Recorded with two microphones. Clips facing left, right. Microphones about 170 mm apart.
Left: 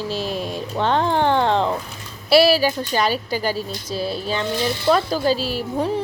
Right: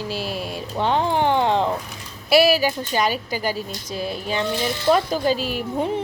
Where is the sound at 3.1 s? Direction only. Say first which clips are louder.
Left 2 dB; 35° left (ahead or behind).